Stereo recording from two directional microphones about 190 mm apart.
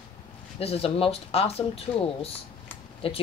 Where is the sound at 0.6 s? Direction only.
30° left (ahead or behind).